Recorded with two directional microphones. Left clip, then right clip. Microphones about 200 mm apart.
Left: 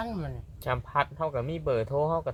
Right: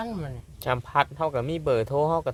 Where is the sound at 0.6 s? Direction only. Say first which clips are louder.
Right 4 dB; 60° right (ahead or behind).